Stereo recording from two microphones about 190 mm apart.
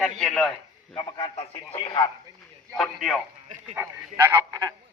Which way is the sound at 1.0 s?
25° left (ahead or behind).